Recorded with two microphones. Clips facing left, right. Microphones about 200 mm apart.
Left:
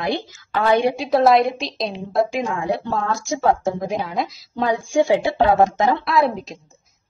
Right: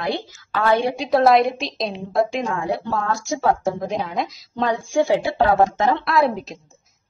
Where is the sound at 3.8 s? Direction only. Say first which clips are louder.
Left 1 dB; 5° left (ahead or behind); by 5.9 s 20° left (ahead or behind).